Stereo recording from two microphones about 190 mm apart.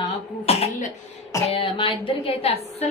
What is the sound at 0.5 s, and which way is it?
Cough, 35° left (ahead or behind).